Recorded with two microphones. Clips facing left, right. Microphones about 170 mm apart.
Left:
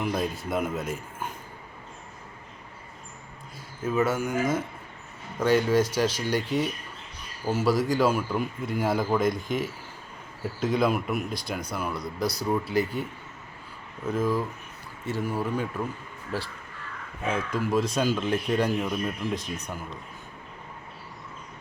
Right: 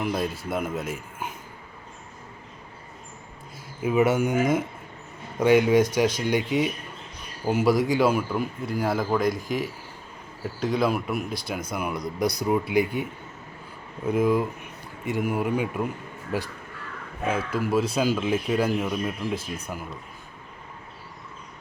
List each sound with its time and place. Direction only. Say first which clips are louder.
0.0 s a man's voice: right 1 dB; 5° right (ahead or behind)
3.8 s a man's voice: right 4 dB; 20° right (ahead or behind); by 11.3 s centre (ahead or behind)
11.7 s speech: right 2 dB; 15° right (ahead or behind)